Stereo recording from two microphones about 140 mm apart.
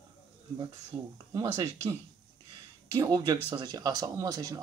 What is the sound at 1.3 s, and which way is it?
Speech, 25° right (ahead or behind).